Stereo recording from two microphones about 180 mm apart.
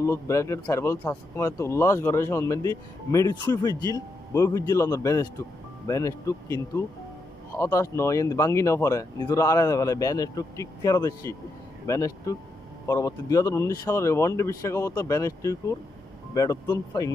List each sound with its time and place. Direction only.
0.0 s a man's voice: 15° left (ahead or behind)